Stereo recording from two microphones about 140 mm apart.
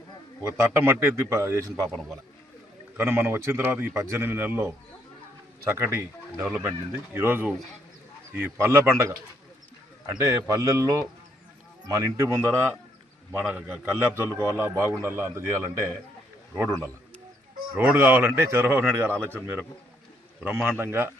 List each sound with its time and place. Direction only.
0.5 s a man's voice: 15° right (ahead or behind)
3.0 s a man's voice: 20° right (ahead or behind)
13.3 s a man's voice: 5° right (ahead or behind)
20.4 s a man's voice: 10° right (ahead or behind)